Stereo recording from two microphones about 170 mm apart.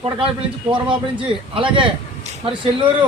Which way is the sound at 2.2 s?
30° right (ahead or behind).